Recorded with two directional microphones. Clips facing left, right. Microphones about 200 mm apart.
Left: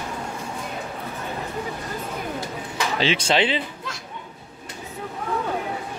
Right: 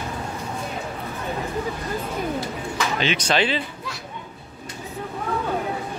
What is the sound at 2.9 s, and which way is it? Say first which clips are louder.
Speech: left 2 dB; 30° left (ahead or behind).